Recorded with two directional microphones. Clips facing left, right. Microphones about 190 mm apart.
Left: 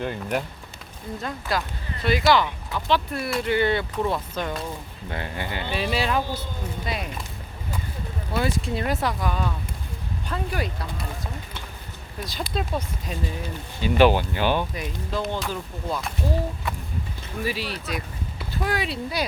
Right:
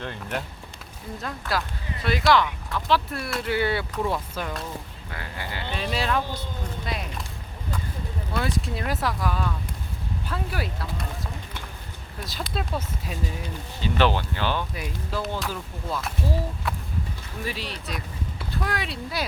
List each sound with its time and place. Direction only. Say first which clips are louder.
0.0 s speech: left 5 dB; 10° left (ahead or behind)
5.0 s speech: left 8 dB; 25° left (ahead or behind)
5.7 s speech: left 2 dB; 5° left (ahead or behind)
8.3 s speech: left 3 dB; centre (ahead or behind)
12.2 s speech: left 3 dB; centre (ahead or behind)
13.8 s speech: left 5 dB; 10° left (ahead or behind)
14.8 s speech: left 2 dB; 5° right (ahead or behind)
17.4 s speech: left 4 dB; 5° left (ahead or behind)